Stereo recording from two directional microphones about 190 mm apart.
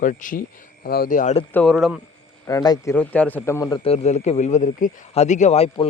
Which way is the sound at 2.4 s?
20° left (ahead or behind).